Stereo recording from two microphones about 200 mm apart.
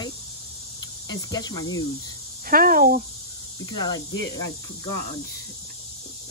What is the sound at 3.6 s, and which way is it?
Speech, 20° left (ahead or behind).